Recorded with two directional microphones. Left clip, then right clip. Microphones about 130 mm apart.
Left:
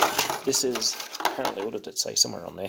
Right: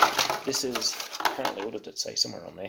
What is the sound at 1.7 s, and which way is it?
Speech, 70° left (ahead or behind).